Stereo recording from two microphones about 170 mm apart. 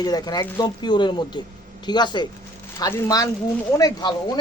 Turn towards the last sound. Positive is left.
turn(degrees=20)  # may be behind; listen again after turning